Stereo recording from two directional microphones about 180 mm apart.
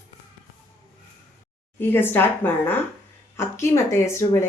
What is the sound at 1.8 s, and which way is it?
Speech, 10° left (ahead or behind).